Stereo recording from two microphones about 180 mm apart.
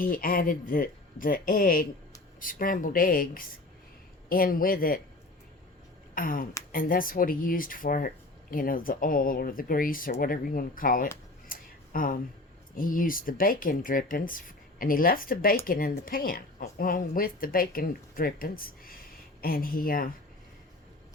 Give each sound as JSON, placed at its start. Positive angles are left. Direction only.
{"t": 0.0, "sound": "speech", "side_deg": 50}
{"t": 6.1, "sound": "speech", "side_deg": 50}
{"t": 11.5, "sound": "a sound", "side_deg": 50}
{"t": 11.9, "sound": "speech", "side_deg": 50}